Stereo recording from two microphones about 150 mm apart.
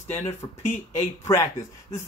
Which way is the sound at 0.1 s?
20° left (ahead or behind).